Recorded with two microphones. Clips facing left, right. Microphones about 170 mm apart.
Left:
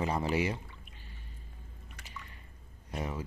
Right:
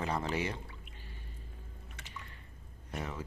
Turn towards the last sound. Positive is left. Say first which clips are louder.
# left 3 dB
turn(degrees=10)  # may be behind; listen again after turning